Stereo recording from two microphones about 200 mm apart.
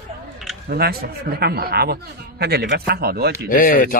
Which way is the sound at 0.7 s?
50° right (ahead or behind).